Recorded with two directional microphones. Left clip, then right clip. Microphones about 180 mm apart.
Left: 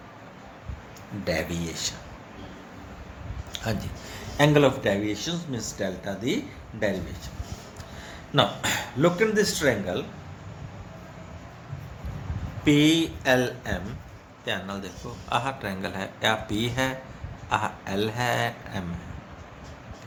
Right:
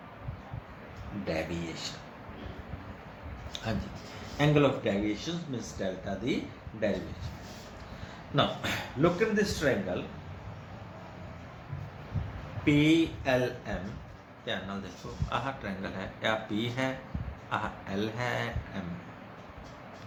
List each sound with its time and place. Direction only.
1.2 s speech: 60° left (ahead or behind)
3.5 s a sound: 35° left (ahead or behind)
4.4 s speech: 55° left (ahead or behind)
8.4 s speech: 55° left (ahead or behind)
12.6 s speech: 60° left (ahead or behind)